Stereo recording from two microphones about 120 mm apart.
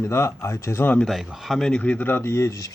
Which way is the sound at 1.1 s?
5° right (ahead or behind).